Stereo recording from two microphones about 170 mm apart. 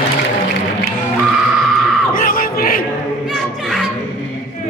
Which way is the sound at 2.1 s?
55° left (ahead or behind).